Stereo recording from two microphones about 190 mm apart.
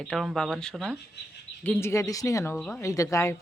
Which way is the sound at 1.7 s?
15° left (ahead or behind).